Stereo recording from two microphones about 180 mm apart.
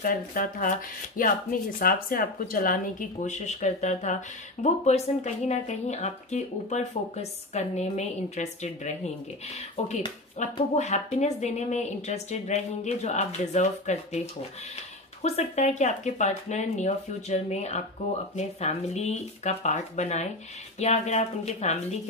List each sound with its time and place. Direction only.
0.0 s speech: 50° left (ahead or behind)
10.4 s speech: 40° left (ahead or behind)